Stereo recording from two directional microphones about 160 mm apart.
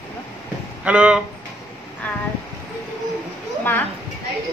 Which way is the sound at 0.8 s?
10° right (ahead or behind).